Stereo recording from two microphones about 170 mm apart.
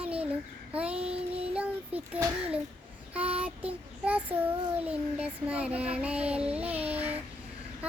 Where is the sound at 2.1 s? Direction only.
10° right (ahead or behind).